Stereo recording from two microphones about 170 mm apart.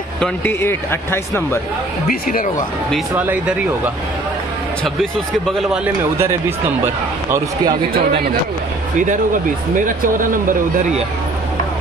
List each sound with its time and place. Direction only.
0.2 s speech: 10° left (ahead or behind)
2.0 s speech: 55° left (ahead or behind)
3.2 s speech: 10° right (ahead or behind)
7.2 s speech: 15° right (ahead or behind)
9.0 s speech: 50° right (ahead or behind)